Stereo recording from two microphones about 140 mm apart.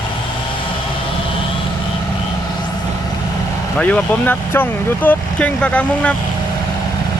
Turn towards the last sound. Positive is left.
turn(degrees=10)  # may be behind; listen again after turning